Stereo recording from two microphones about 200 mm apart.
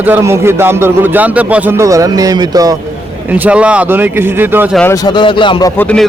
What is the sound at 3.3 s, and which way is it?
Speech, 5° right (ahead or behind).